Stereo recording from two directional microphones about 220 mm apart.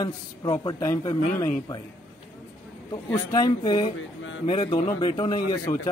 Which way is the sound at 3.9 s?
60° left (ahead or behind).